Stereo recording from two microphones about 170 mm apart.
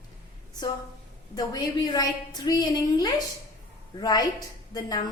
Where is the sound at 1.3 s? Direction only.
25° left (ahead or behind).